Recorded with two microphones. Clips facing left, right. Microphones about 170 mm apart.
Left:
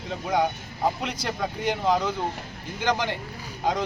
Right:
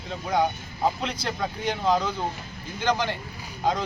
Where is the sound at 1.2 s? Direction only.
15° left (ahead or behind).